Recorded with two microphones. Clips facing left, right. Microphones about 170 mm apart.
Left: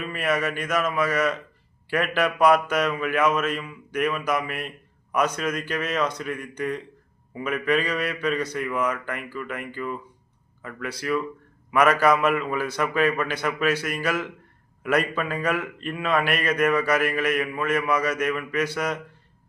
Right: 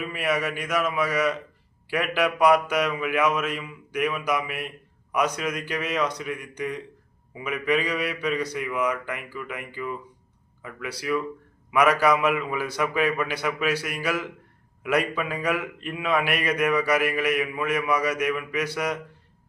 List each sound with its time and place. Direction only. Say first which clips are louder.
0.0 s a man's voice: left 1 dB; 10° right (ahead or behind)